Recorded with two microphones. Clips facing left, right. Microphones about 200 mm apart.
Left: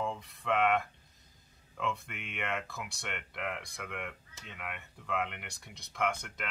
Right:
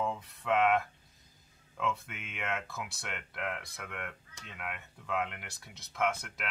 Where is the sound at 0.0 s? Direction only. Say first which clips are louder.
Right 1 dB; centre (ahead or behind).